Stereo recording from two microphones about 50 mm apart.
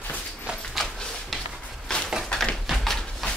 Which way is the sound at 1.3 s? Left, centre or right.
Centre.